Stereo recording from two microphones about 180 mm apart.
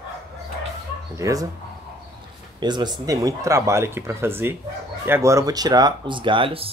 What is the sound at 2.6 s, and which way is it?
Speech, 25° right (ahead or behind).